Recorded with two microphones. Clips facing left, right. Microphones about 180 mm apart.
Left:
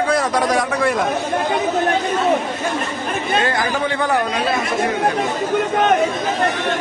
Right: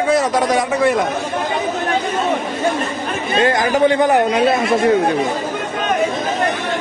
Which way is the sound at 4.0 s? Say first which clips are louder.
Right 5 dB; 20° right (ahead or behind).